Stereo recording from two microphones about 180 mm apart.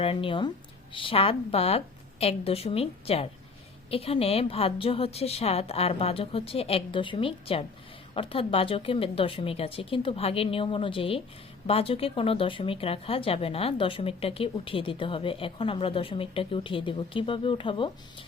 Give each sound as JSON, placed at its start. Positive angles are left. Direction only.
{"t": 0.0, "sound": "speech", "side_deg": 30}